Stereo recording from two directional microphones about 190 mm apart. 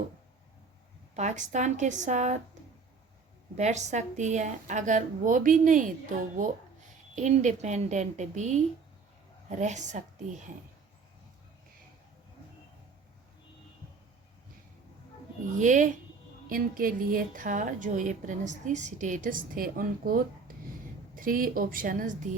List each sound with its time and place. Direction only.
1.1 s a woman's voice: 40° right (ahead or behind)
3.6 s a woman's voice: 35° right (ahead or behind)
15.6 s a woman's voice: 40° right (ahead or behind)